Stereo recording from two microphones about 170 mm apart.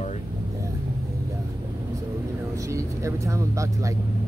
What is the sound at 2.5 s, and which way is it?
Speech, 20° right (ahead or behind).